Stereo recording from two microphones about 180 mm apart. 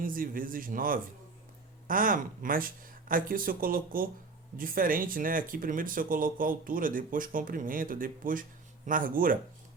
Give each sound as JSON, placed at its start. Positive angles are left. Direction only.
{"t": 0.0, "sound": "speech", "side_deg": -50}